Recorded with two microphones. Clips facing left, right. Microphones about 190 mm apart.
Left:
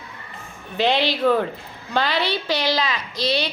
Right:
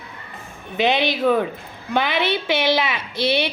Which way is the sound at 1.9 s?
20° right (ahead or behind).